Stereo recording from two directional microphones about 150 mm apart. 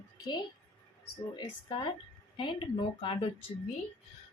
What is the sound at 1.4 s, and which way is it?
Speech, 35° left (ahead or behind).